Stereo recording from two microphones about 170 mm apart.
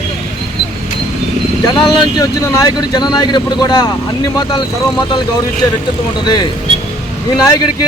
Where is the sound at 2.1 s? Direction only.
20° left (ahead or behind).